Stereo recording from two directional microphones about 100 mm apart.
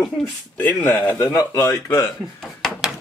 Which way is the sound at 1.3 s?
30° left (ahead or behind).